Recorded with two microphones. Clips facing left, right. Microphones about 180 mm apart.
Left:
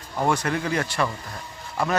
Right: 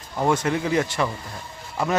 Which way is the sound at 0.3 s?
20° right (ahead or behind).